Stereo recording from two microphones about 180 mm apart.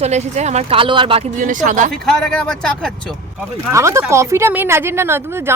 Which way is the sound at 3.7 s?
15° right (ahead or behind).